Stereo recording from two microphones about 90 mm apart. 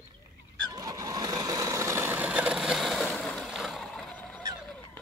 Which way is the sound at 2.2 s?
15° right (ahead or behind).